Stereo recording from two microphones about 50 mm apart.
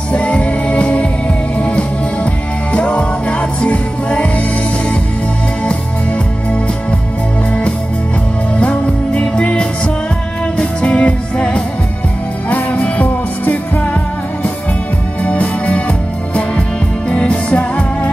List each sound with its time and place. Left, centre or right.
0.1 s music: left
8.5 s music: left
15.2 s music: left
17.1 s music: left